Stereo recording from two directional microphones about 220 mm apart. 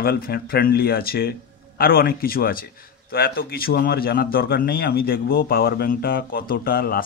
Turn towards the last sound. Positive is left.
turn(degrees=40)  # may be behind; listen again after turning